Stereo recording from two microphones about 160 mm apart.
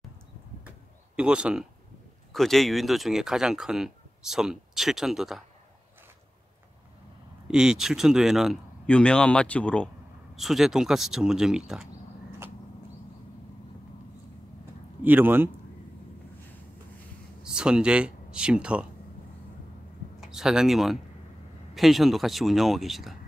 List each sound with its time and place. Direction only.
1.1 s a man's voice: 5° right (ahead or behind)
7.4 s speech: 5° right (ahead or behind)
15.0 s a man's voice: 10° right (ahead or behind)
17.4 s speech: 5° right (ahead or behind)
20.2 s speech: 5° right (ahead or behind)